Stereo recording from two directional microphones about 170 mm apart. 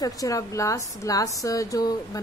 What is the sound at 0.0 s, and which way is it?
A woman's voice, 20° left (ahead or behind).